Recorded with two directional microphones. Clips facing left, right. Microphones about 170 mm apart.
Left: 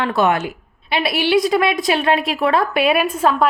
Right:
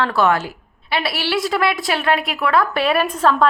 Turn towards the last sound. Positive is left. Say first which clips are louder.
# even
turn(degrees=10)  # may be behind; listen again after turning